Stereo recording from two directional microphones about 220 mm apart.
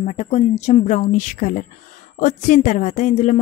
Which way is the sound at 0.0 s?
30° left (ahead or behind).